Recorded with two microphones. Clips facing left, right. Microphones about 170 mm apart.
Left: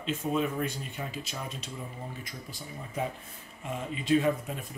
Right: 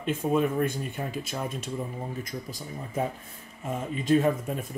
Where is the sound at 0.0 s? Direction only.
50° right (ahead or behind).